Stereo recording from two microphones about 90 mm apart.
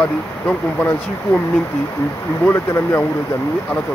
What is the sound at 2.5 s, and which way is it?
Speech, 25° left (ahead or behind).